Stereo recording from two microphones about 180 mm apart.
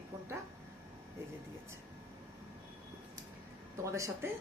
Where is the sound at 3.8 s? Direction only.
15° right (ahead or behind).